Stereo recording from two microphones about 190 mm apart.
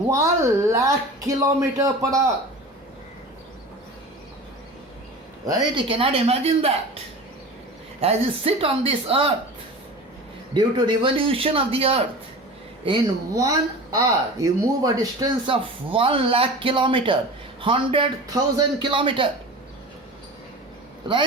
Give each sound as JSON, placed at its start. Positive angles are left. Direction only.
{"t": 0.1, "sound": "a man's voice", "side_deg": -15}
{"t": 5.5, "sound": "speech", "side_deg": -25}
{"t": 8.0, "sound": "speech", "side_deg": -30}
{"t": 10.5, "sound": "speech", "side_deg": -25}